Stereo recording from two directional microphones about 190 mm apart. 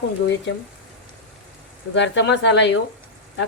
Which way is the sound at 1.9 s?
70° left (ahead or behind).